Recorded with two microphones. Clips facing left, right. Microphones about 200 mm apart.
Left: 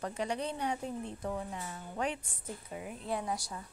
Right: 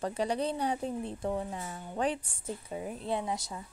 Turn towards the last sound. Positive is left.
turn(degrees=-20)  # may be behind; listen again after turning